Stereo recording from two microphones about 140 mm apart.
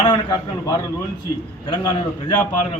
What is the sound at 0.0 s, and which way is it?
A man's voice, 30° left (ahead or behind).